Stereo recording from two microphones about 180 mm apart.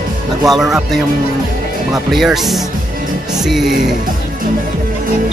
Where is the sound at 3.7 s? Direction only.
50° right (ahead or behind).